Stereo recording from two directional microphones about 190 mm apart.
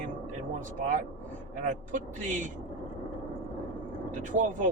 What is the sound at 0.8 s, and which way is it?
Speech, 40° right (ahead or behind).